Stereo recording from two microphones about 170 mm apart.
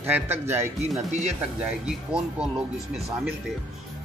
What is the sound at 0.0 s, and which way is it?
A man's voice, 10° right (ahead or behind).